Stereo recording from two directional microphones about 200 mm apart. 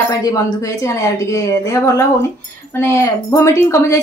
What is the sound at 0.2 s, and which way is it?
A woman's voice, 15° left (ahead or behind).